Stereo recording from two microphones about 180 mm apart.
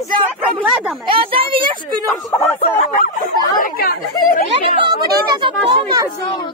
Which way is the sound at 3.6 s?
55° left (ahead or behind).